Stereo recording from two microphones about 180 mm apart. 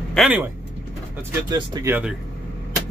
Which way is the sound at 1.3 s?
20° right (ahead or behind).